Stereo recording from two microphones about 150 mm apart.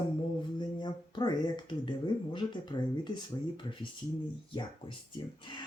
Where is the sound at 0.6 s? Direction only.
30° left (ahead or behind).